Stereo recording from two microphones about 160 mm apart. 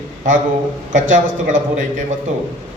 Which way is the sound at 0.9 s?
50° right (ahead or behind).